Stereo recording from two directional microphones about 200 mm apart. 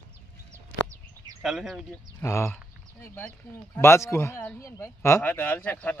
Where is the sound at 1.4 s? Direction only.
Centre (ahead or behind).